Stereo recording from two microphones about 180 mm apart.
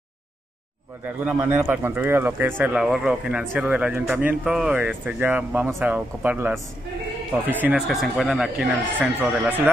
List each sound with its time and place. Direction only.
1.0 s speech: 10° right (ahead or behind)